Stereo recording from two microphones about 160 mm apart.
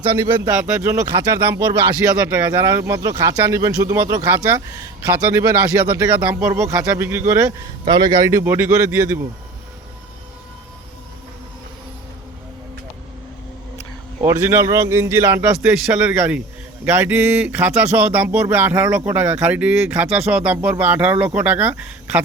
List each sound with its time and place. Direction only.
0.6 s speech: 10° right (ahead or behind)
6.0 s speech: 10° right (ahead or behind)
14.2 s speech: 15° right (ahead or behind)